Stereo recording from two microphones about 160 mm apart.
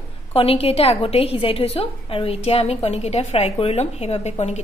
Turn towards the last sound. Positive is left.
turn(degrees=45)  # may be behind; listen again after turning